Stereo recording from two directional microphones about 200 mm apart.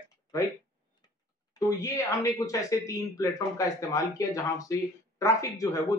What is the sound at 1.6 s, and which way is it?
A man's voice, 15° left (ahead or behind).